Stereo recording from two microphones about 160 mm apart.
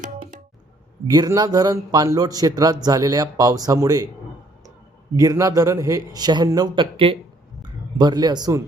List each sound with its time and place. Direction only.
1.0 s a man's voice: 25° right (ahead or behind)
5.1 s a man's voice: 20° right (ahead or behind)